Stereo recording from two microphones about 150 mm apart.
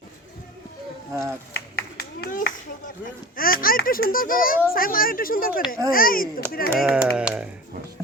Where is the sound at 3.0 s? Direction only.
70° left (ahead or behind).